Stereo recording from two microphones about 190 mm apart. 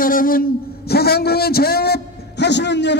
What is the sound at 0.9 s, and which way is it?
A man's voice, 55° left (ahead or behind).